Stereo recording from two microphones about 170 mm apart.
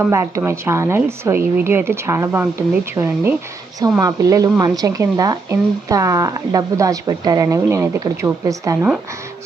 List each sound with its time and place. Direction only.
0.0 s a woman's voice: 15° right (ahead or behind)